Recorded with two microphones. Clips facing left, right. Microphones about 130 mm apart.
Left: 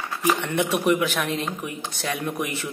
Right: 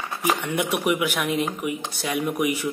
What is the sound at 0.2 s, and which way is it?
A woman's voice, 10° right (ahead or behind).